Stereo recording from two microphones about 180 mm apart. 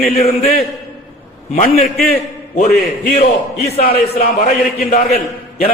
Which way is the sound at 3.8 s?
55° left (ahead or behind).